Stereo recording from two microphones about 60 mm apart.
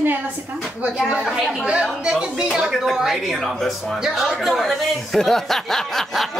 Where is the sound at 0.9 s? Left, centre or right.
Centre.